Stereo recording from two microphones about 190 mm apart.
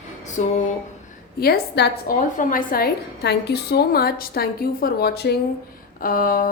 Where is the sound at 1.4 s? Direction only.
55° left (ahead or behind).